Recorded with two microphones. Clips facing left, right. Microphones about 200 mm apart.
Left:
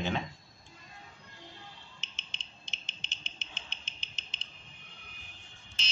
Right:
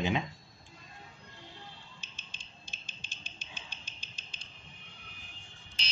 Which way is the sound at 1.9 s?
20° left (ahead or behind).